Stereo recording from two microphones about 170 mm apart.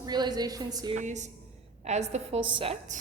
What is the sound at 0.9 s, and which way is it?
A woman's voice, 45° right (ahead or behind).